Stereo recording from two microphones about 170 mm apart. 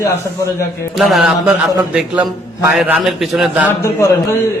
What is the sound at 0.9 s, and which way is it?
A man's voice, centre (ahead or behind).